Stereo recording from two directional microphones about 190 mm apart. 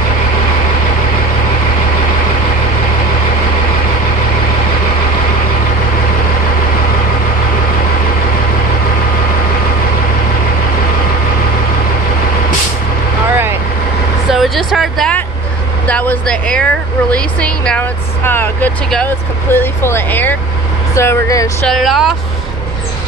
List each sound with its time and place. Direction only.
14.3 s vehicle: centre (ahead or behind)
15.9 s speech: 10° left (ahead or behind)
21.6 s speech: centre (ahead or behind)